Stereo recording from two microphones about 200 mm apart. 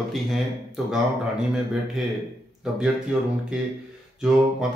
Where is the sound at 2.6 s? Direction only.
5° right (ahead or behind).